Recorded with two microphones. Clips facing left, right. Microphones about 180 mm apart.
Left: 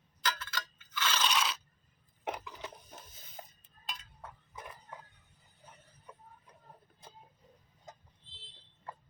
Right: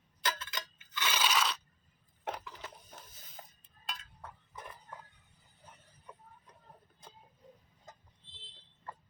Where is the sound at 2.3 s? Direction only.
15° left (ahead or behind).